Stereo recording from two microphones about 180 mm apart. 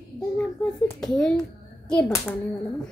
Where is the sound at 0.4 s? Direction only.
5° left (ahead or behind).